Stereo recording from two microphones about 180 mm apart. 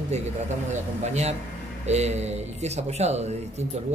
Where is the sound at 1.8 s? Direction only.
40° right (ahead or behind).